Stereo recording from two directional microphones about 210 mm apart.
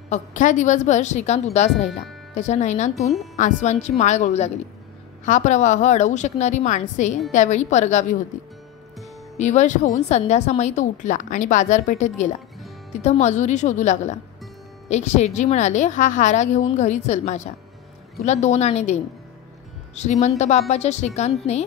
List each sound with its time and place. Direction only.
0.1 s a woman's voice: 35° left (ahead or behind)
9.4 s a woman's voice: 35° left (ahead or behind)
20.0 s a woman's voice: 30° left (ahead or behind)